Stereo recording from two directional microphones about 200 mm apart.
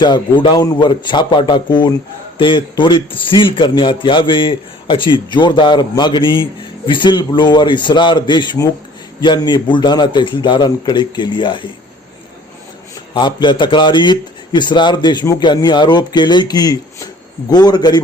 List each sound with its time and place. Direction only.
0.0 s a man's voice: 25° left (ahead or behind)
13.1 s a man's voice: 25° left (ahead or behind)